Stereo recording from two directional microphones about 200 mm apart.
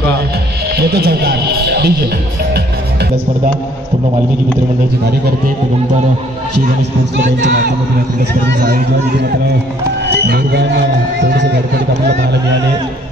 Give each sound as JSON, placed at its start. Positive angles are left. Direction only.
{"t": 0.7, "sound": "speech", "side_deg": -50}
{"t": 7.4, "sound": "speech", "side_deg": -45}